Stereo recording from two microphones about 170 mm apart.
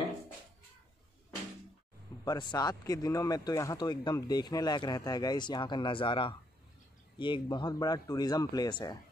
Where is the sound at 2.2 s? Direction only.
25° left (ahead or behind).